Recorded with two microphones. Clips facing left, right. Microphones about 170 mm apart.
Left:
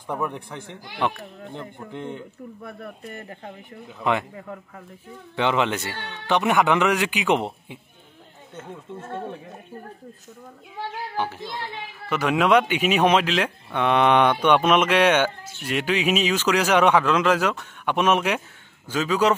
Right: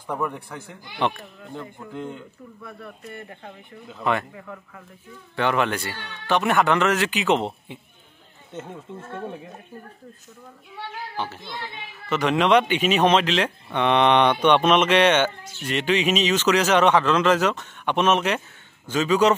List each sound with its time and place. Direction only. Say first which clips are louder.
0.1 s speech: even; 5° left (ahead or behind)
1.5 s speech: right 2 dB; 20° left (ahead or behind)
3.0 s speech: left 1 dB; 35° left (ahead or behind)
4.0 s speech: left 1 dB; 15° left (ahead or behind)
4.4 s speech: left 2 dB; 30° left (ahead or behind); by 7.8 s 10° left (ahead or behind)
11.1 s speech: left 3 dB; 15° left (ahead or behind)